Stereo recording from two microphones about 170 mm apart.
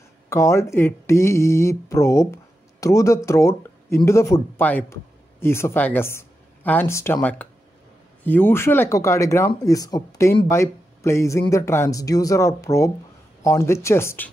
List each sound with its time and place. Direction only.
0.3 s speech: 15° left (ahead or behind)